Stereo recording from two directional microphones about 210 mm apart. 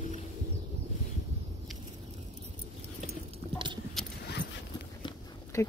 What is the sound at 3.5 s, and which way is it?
Clip-clop, 20° right (ahead or behind).